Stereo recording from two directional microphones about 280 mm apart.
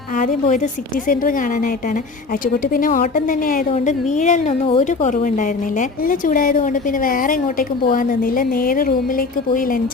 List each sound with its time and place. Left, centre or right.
0.2 s a woman's voice: left
2.7 s a woman's voice: left